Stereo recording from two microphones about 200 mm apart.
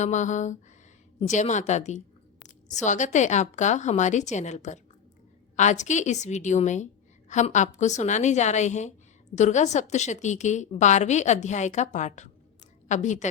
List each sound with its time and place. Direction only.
0.0 s a woman's voice: 35° left (ahead or behind)